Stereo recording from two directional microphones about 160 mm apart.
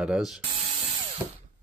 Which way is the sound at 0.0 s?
5° right (ahead or behind).